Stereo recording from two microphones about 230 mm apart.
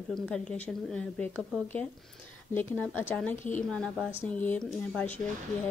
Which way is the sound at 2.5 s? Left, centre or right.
Left.